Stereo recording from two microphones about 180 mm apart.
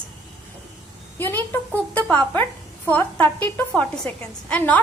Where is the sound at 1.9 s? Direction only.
10° left (ahead or behind).